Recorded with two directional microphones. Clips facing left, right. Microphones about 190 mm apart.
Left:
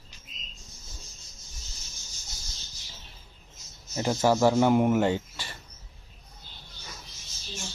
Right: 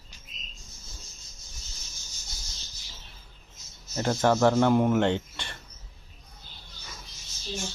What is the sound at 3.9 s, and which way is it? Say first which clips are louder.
Speech: even; 5° left (ahead or behind).